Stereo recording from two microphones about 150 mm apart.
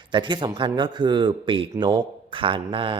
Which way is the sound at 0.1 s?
30° right (ahead or behind).